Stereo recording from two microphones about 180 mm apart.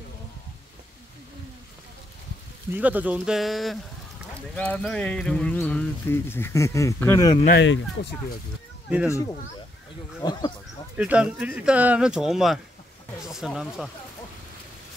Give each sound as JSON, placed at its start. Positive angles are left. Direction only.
{"t": 2.7, "sound": "speech", "side_deg": -10}
{"t": 7.4, "sound": "speech", "side_deg": 75}
{"t": 10.2, "sound": "speech", "side_deg": 25}
{"t": 11.0, "sound": "speech", "side_deg": -5}